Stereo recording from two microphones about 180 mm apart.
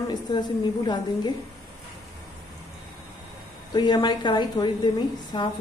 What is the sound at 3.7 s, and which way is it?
A woman's voice, 25° left (ahead or behind).